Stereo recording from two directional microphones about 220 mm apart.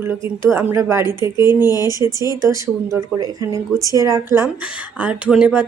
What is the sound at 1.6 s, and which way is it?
Speech, 15° left (ahead or behind).